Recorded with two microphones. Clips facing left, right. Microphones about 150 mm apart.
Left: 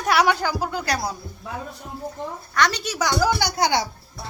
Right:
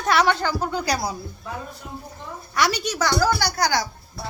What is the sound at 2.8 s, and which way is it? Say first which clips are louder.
A woman's voice: even; 10° left (ahead or behind).